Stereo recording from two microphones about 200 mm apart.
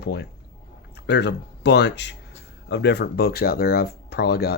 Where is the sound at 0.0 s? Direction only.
55° left (ahead or behind).